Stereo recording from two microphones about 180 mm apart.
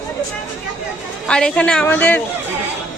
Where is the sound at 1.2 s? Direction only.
5° left (ahead or behind).